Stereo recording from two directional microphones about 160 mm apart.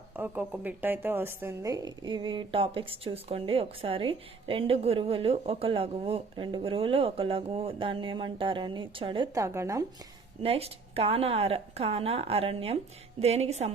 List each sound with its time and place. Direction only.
0.2 s a woman's voice: 10° right (ahead or behind); by 9.3 s 30° right (ahead or behind)
9.3 s speech: 20° right (ahead or behind)
10.4 s a woman's voice: 35° right (ahead or behind)